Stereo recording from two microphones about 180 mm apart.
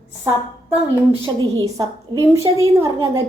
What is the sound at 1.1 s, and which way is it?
Speech, 30° right (ahead or behind).